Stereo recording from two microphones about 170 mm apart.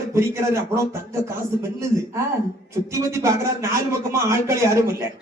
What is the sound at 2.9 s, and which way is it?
Speech, 15° right (ahead or behind).